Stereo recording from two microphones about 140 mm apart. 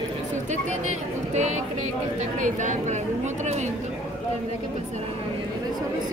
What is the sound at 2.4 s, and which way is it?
Speech, 60° right (ahead or behind).